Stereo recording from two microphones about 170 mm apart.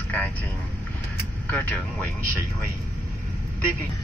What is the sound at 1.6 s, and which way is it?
Speech, 10° left (ahead or behind).